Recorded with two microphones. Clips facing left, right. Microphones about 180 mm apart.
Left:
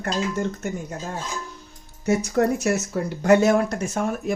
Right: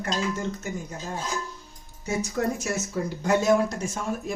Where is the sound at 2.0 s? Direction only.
65° left (ahead or behind).